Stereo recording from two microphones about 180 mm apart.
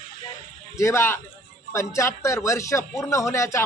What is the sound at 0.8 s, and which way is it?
A man's voice, 15° left (ahead or behind).